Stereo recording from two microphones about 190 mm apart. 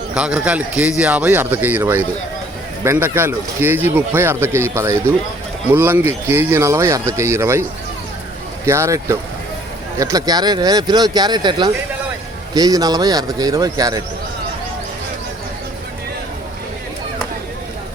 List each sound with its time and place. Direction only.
0.1 s speech: 5° right (ahead or behind)
8.6 s speech: 15° right (ahead or behind)